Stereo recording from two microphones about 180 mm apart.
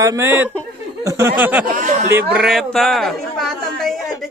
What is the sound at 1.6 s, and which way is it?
Speech, 45° right (ahead or behind).